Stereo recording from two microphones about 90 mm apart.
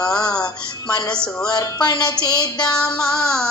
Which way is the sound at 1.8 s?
55° left (ahead or behind).